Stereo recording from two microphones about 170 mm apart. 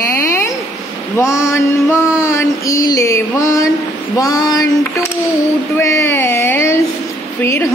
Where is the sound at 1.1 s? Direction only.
20° left (ahead or behind).